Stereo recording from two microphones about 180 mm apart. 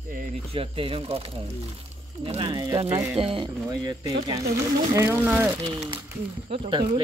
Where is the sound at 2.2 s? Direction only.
30° right (ahead or behind).